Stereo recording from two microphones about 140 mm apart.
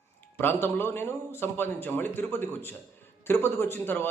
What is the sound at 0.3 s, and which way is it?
A man's voice, 15° left (ahead or behind).